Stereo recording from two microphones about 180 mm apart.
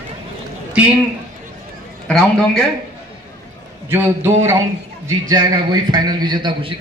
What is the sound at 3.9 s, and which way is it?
A man's voice, 15° right (ahead or behind).